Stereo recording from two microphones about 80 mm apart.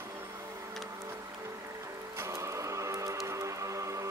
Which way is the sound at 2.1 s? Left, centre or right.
Right.